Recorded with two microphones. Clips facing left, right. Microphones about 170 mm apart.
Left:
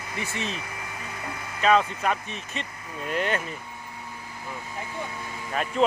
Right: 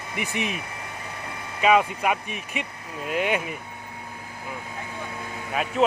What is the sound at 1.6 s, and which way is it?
Speech, 10° right (ahead or behind).